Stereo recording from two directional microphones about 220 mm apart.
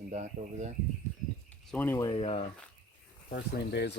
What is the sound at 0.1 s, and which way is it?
Speech, 35° right (ahead or behind).